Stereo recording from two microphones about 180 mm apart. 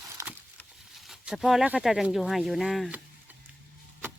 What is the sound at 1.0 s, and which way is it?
Speech, 5° right (ahead or behind).